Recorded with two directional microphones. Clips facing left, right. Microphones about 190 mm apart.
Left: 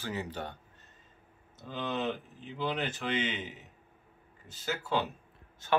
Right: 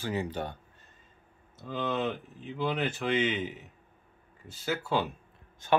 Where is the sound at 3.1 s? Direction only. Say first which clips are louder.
Right 6 dB; 50° right (ahead or behind).